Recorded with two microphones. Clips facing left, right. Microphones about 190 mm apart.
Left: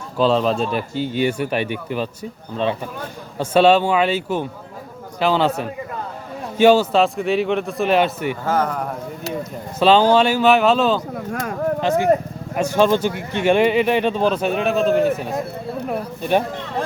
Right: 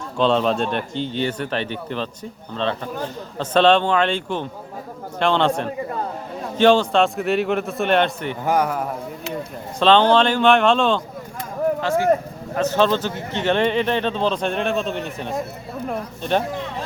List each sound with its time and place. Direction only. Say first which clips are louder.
0.2 s speech: left 1 dB; centre (ahead or behind)
3.3 s a man's voice: left 2 dB; 10° left (ahead or behind)
8.4 s speech: right 2 dB; 10° right (ahead or behind)
9.8 s speech: left 1 dB; 10° left (ahead or behind)
11.3 s speech: left 8 dB; 75° left (ahead or behind)
11.8 s speech: left 4 dB; 20° left (ahead or behind)